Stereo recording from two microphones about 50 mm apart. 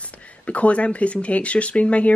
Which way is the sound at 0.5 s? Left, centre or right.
Left.